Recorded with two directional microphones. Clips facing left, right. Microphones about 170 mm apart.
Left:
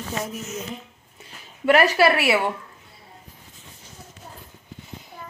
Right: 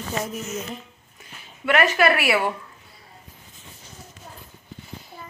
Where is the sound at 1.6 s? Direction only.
35° left (ahead or behind).